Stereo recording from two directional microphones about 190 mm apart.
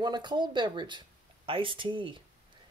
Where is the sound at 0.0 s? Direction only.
25° right (ahead or behind).